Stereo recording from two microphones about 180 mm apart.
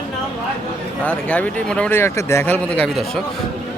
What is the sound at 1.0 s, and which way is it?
Speech, 10° left (ahead or behind).